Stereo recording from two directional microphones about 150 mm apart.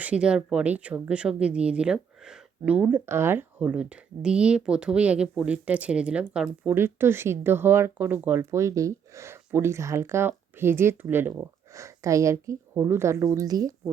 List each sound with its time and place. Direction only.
0.0 s speech: 5° right (ahead or behind); by 13.9 s 25° right (ahead or behind)